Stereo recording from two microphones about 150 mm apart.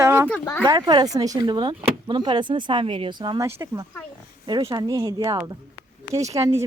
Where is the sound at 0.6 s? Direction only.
25° right (ahead or behind).